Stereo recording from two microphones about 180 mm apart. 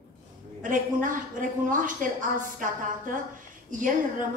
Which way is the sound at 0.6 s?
45° right (ahead or behind).